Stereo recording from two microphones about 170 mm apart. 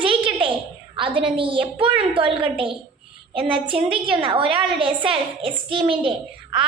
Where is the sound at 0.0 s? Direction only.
30° right (ahead or behind).